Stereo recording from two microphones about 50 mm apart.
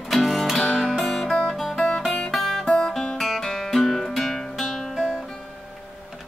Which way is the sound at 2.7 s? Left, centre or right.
Left.